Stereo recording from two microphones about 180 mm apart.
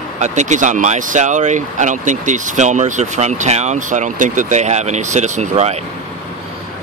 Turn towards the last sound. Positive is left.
turn(degrees=-35)  # may be behind; listen again after turning